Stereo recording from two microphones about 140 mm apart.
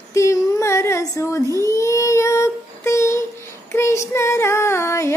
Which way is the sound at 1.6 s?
20° left (ahead or behind).